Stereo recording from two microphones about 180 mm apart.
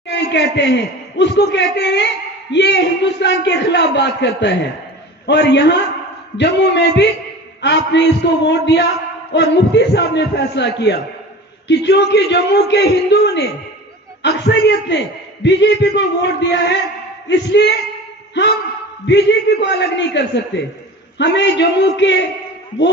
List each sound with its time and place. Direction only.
0.1 s a man's voice: 75° left (ahead or behind)
19.0 s a man's voice: 75° left (ahead or behind)